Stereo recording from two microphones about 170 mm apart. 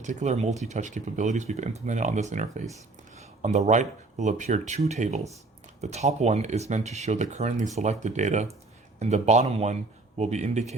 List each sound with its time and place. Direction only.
0.0 s speech: 45° right (ahead or behind)